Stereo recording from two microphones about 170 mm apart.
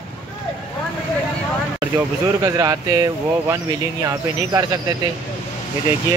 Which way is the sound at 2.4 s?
20° right (ahead or behind).